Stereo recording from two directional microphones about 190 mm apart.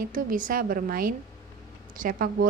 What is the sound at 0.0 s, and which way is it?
Speech, 45° right (ahead or behind).